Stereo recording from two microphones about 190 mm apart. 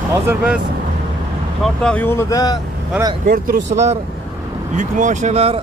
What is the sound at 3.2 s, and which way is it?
Speech, 35° right (ahead or behind).